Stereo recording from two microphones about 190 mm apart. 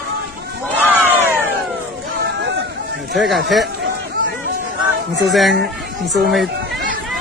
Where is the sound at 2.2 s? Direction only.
65° right (ahead or behind).